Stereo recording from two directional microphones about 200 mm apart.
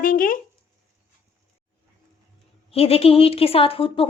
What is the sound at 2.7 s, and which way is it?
A woman's voice, 30° left (ahead or behind).